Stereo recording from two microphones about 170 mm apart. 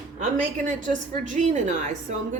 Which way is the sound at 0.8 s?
50° right (ahead or behind).